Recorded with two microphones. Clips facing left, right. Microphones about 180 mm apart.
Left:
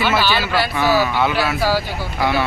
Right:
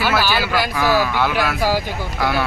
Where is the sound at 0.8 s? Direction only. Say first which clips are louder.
Left 1 dB; 5° left (ahead or behind).